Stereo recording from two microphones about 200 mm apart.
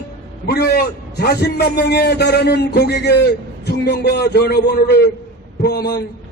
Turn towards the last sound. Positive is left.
turn(degrees=50)  # may be behind; listen again after turning